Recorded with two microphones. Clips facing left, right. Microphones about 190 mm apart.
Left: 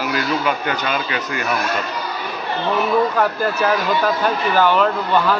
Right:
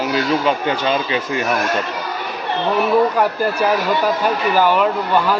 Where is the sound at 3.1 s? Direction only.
10° right (ahead or behind).